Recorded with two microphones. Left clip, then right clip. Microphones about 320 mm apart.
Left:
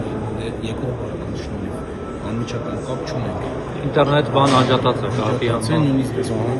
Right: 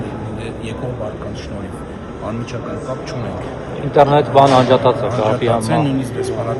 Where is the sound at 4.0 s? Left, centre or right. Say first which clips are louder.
Right 6 dB; right.